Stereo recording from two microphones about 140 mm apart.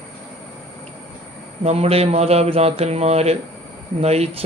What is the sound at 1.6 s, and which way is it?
Speech, 45° right (ahead or behind).